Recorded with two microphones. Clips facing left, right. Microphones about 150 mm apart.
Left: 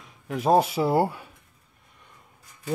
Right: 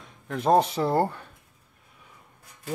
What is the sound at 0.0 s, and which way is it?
Speech, 5° left (ahead or behind).